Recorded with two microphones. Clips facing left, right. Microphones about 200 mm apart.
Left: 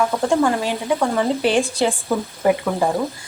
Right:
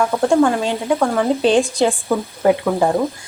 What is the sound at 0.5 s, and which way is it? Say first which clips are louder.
A woman's voice: right 2 dB; 20° right (ahead or behind).